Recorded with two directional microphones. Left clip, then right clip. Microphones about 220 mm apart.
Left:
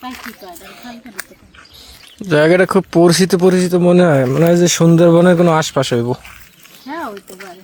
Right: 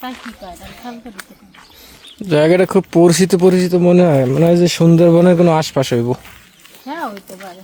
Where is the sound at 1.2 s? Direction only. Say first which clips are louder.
Left 4 dB; 45° left (ahead or behind).